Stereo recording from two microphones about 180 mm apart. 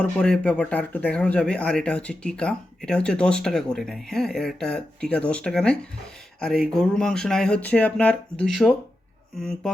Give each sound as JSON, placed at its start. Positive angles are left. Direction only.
{"t": 0.0, "sound": "speech", "side_deg": 5}